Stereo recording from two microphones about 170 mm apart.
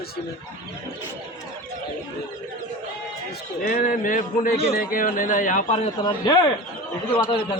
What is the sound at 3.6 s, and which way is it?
A man's voice, 55° left (ahead or behind).